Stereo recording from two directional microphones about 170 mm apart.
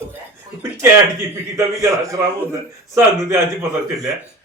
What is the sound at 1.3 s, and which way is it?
A man's voice, 20° right (ahead or behind).